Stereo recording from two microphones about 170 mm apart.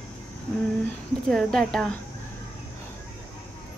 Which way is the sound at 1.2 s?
Centre (ahead or behind).